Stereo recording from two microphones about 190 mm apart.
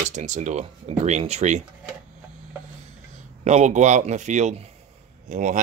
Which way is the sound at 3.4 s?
40° right (ahead or behind).